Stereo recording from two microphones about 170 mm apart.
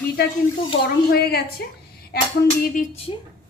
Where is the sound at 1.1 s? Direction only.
70° left (ahead or behind).